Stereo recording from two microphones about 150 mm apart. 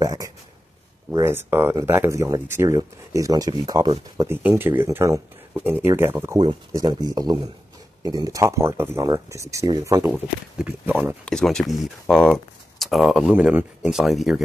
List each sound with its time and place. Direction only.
0.0 s a sound: 25° right (ahead or behind)
1.1 s speech: 15° right (ahead or behind)
4.2 s speech: 15° right (ahead or behind)
10.0 s speech: 10° right (ahead or behind)
11.2 s speech: 5° left (ahead or behind)